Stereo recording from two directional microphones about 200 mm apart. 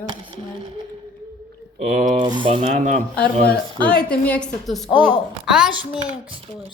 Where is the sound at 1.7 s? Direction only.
35° right (ahead or behind).